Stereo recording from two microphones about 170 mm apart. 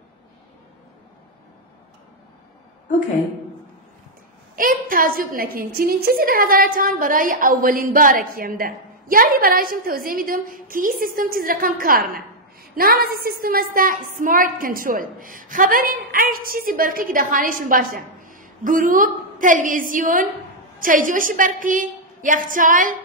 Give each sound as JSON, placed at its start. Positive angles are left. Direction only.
{"t": 4.6, "sound": "a woman's voice", "side_deg": -55}